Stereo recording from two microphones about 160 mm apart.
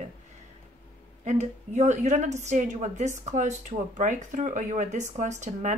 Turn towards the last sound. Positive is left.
turn(degrees=-50)  # may be behind; listen again after turning